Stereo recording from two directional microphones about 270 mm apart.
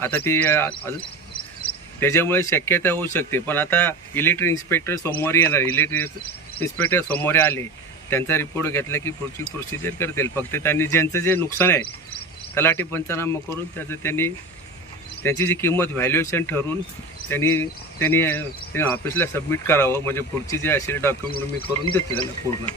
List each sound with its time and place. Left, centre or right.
0.0 s speech: centre
1.6 s cricket: centre
2.0 s speech: centre